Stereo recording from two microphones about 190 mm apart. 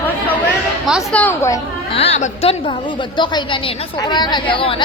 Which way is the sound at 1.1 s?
10° left (ahead or behind).